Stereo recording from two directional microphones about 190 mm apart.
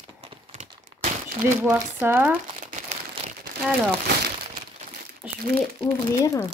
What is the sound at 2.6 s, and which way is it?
Crumpling, 40° right (ahead or behind).